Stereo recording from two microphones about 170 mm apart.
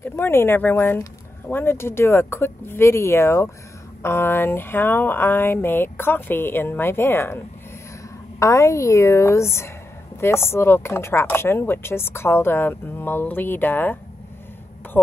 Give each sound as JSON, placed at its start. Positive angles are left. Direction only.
{"t": 0.0, "sound": "speech", "side_deg": 15}
{"t": 8.4, "sound": "speech", "side_deg": 15}